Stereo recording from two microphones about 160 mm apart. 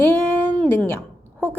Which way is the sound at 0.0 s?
10° left (ahead or behind).